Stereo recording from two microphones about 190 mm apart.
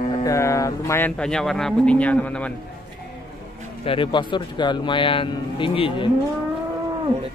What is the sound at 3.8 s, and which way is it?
Speech, 25° left (ahead or behind).